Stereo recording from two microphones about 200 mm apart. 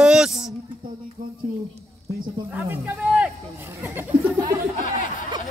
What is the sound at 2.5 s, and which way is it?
Speech, 5° right (ahead or behind).